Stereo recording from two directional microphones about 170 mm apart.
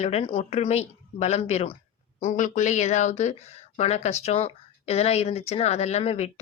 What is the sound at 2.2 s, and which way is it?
Speech, 45° left (ahead or behind).